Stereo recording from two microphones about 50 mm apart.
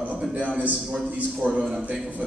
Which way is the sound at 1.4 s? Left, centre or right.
Right.